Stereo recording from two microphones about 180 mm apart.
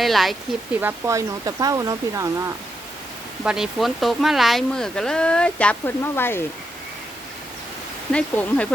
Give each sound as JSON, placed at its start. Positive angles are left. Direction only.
{"t": 0.0, "sound": "speech", "side_deg": 0}
{"t": 0.8, "sound": "speech", "side_deg": -15}
{"t": 3.4, "sound": "speech", "side_deg": -5}
{"t": 8.1, "sound": "speech", "side_deg": 5}